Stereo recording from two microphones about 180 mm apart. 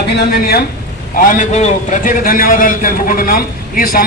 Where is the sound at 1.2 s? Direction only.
45° left (ahead or behind).